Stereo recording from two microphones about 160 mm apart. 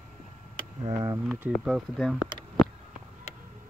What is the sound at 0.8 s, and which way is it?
Speech, 30° right (ahead or behind).